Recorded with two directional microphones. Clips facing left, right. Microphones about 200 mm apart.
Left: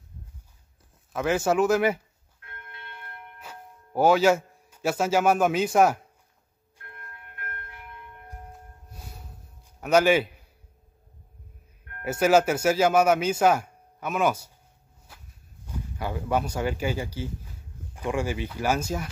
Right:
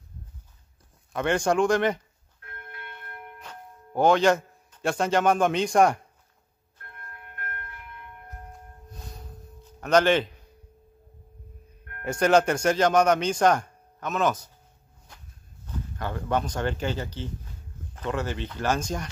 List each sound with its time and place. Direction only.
1.1 s speech: 5° left (ahead or behind)
2.4 s bell: 35° right (ahead or behind)
3.3 s a man's voice: 5° left (ahead or behind)
8.9 s music: 10° left (ahead or behind)
9.8 s speech: 10° left (ahead or behind)
12.0 s speech: 5° left (ahead or behind)
15.1 s a sound: 5° left (ahead or behind)
15.6 s speech: 10° left (ahead or behind)